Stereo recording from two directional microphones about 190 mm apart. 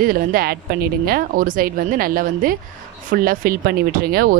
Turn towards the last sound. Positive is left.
turn(degrees=-50)  # may be behind; listen again after turning